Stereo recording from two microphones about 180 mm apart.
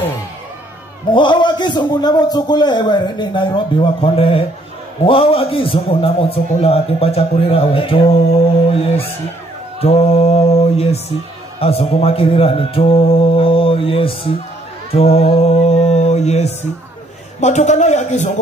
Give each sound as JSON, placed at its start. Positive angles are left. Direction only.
{"t": 1.1, "sound": "a man's voice", "side_deg": 25}
{"t": 14.9, "sound": "mantra", "side_deg": 35}
{"t": 17.4, "sound": "a man's voice", "side_deg": 40}